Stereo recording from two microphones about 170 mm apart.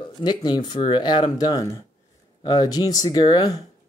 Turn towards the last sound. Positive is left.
turn(degrees=25)  # may be behind; listen again after turning